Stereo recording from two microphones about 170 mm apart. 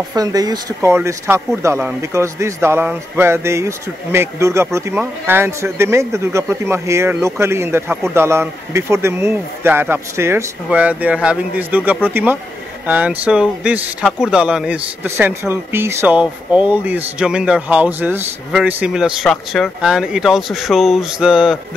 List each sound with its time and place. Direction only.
0.1 s a man's voice: 20° right (ahead or behind); by 21.5 s 5° right (ahead or behind)